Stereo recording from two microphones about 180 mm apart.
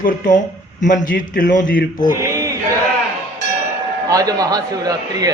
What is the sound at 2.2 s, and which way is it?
Speech, 15° right (ahead or behind).